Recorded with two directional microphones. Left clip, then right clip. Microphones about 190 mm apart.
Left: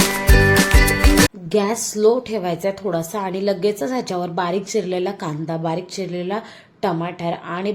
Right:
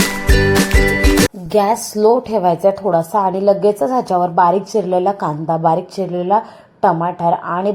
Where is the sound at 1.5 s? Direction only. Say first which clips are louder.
Right 6 dB; 15° right (ahead or behind).